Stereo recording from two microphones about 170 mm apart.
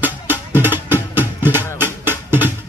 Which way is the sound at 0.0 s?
10° right (ahead or behind).